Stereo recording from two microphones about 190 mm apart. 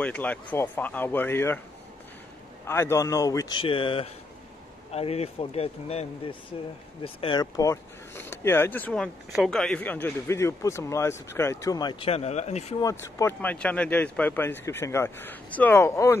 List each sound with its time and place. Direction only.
0.0 s speech: 5° left (ahead or behind)
2.6 s speech: 15° left (ahead or behind); by 12.7 s 35° left (ahead or behind)
12.8 s speech: 15° left (ahead or behind)